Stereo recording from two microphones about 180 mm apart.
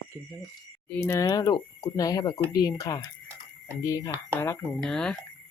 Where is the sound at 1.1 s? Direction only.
20° left (ahead or behind).